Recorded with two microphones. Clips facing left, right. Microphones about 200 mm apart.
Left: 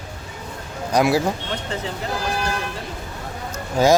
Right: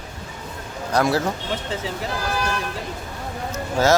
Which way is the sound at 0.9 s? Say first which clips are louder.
Left 2 dB; 10° left (ahead or behind).